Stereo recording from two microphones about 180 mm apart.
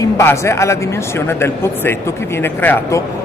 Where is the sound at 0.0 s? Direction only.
15° left (ahead or behind).